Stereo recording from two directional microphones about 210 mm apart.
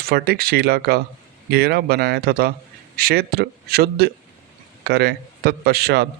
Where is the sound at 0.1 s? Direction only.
45° right (ahead or behind).